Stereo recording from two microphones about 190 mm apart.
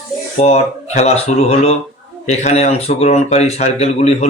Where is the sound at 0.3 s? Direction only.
35° left (ahead or behind).